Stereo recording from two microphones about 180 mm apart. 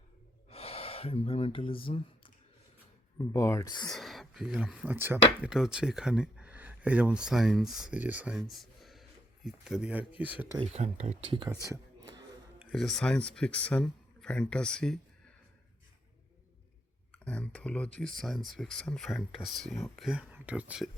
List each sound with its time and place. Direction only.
0.5 s a sound: 35° left (ahead or behind)
3.2 s speech: 15° left (ahead or behind)
3.8 s speech: centre (ahead or behind)
10.6 s speech: 35° right (ahead or behind)
11.7 s whispering: 20° right (ahead or behind)
12.7 s speech: centre (ahead or behind)
17.1 s speech: 5° left (ahead or behind)